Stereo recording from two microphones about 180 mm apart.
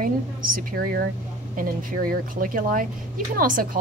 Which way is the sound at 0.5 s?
55° right (ahead or behind).